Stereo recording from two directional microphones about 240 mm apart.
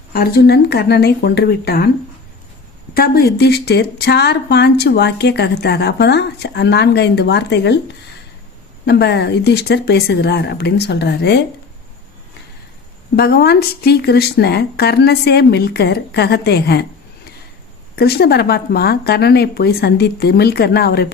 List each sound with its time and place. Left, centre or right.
0.1 s speech: left
2.9 s speech: left
13.1 s speech: left
17.9 s speech: left